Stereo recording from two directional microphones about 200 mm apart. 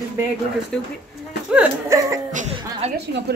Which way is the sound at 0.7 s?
5° left (ahead or behind).